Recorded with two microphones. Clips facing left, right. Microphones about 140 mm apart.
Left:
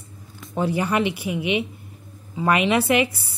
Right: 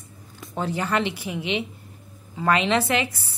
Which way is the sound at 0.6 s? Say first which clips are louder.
Left 3 dB; 10° left (ahead or behind).